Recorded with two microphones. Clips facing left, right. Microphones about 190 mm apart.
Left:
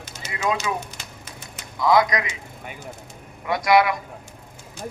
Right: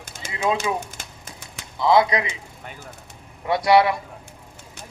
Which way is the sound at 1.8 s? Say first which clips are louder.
Right 1 dB; 25° right (ahead or behind).